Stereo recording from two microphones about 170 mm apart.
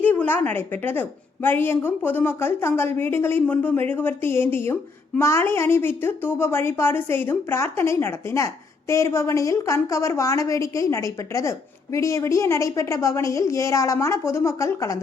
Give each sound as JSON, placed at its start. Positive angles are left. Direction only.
{"t": 0.0, "sound": "a woman's voice", "side_deg": 10}